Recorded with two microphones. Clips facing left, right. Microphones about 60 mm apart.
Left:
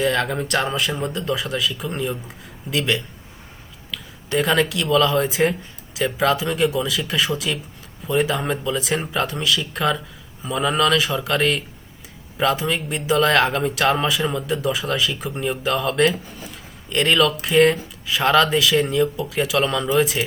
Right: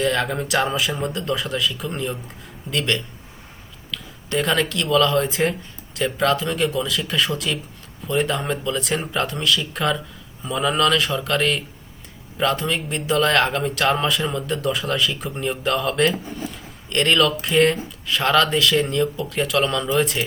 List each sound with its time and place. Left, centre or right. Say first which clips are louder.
0.0 s speech: left 1 dB; centre
16.4 s a sound: right 5 dB; centre
17.4 s speech: left 2 dB; centre